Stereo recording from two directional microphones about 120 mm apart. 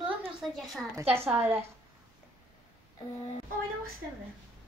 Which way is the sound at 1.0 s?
15° right (ahead or behind).